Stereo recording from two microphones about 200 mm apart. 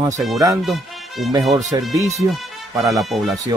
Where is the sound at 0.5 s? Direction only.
Centre (ahead or behind).